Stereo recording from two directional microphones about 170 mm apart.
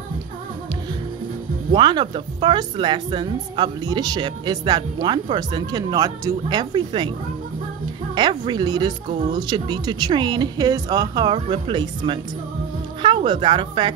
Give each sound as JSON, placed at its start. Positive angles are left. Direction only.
{"t": 1.7, "sound": "a woman's voice", "side_deg": -25}
{"t": 8.1, "sound": "a woman's voice", "side_deg": -25}